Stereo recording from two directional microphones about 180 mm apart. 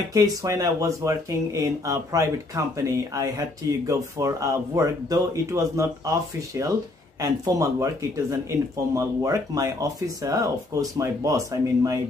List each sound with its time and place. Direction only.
0.1 s speech: 20° right (ahead or behind)